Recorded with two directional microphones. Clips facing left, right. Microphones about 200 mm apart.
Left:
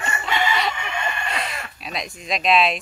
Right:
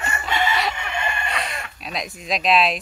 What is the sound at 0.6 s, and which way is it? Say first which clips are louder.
Speech: even; centre (ahead or behind).